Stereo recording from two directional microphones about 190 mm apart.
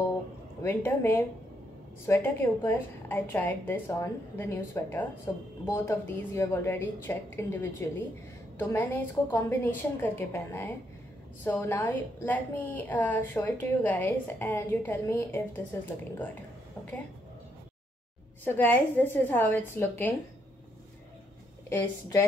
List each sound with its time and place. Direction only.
0.6 s a woman's voice: 15° left (ahead or behind)
18.4 s a woman's voice: 10° left (ahead or behind)
21.6 s a woman's voice: 15° left (ahead or behind)